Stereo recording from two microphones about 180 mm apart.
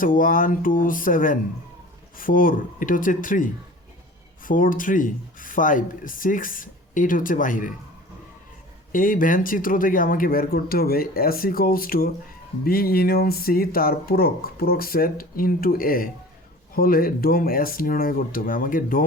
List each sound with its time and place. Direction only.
0.0 s speech: 50° left (ahead or behind)
8.9 s speech: 50° left (ahead or behind)